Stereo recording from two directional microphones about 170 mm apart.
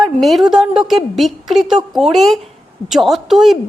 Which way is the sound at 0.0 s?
Centre (ahead or behind).